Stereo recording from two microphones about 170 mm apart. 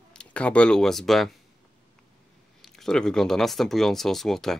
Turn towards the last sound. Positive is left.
turn(degrees=0)  # may be behind; listen again after turning